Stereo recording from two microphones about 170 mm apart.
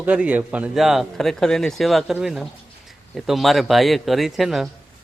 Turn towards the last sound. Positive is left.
turn(degrees=0)  # may be behind; listen again after turning